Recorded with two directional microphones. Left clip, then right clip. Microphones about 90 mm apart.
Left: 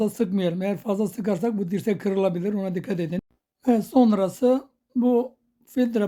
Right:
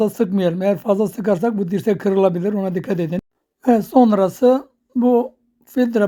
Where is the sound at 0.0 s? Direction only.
35° right (ahead or behind).